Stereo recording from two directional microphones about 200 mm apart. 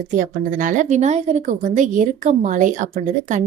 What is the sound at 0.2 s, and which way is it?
Speech, 40° right (ahead or behind).